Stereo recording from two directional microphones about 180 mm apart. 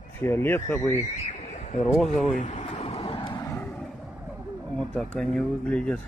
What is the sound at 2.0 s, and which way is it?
Vehicle, 40° left (ahead or behind).